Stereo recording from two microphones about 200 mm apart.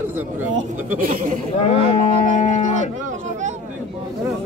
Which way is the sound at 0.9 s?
45° right (ahead or behind).